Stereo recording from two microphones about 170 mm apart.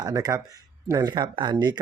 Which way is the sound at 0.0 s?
20° right (ahead or behind).